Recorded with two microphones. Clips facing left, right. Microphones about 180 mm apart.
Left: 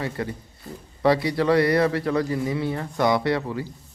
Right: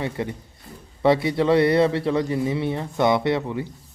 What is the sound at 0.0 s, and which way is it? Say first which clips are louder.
A man's voice: right 1 dB; 20° right (ahead or behind).